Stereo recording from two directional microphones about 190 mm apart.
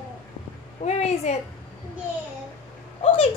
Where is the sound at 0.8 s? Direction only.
35° left (ahead or behind).